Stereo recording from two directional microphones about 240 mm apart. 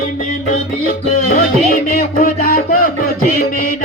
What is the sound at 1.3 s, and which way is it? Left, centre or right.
Music, left.